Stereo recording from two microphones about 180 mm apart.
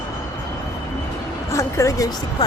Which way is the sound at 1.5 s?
15° left (ahead or behind).